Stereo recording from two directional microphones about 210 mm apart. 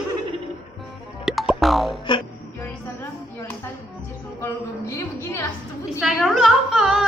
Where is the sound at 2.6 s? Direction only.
10° left (ahead or behind).